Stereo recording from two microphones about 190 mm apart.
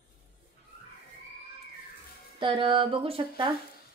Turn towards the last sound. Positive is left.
turn(degrees=-30)  # may be behind; listen again after turning